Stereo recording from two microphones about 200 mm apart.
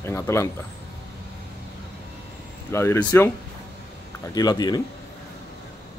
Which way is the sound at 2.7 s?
15° left (ahead or behind).